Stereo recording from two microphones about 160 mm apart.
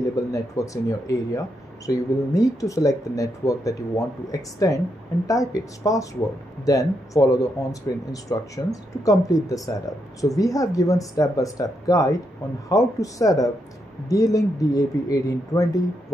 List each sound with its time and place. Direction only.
0.1 s speech: 20° left (ahead or behind)